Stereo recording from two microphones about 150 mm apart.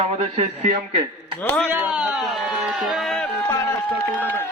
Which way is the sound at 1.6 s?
10° right (ahead or behind).